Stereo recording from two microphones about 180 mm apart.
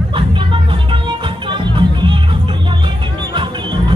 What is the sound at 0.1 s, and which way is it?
Music, 30° right (ahead or behind).